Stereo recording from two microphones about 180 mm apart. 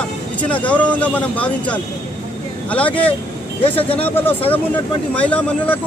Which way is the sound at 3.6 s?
30° left (ahead or behind).